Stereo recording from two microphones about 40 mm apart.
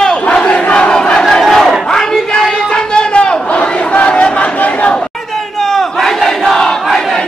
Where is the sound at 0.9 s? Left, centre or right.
Centre.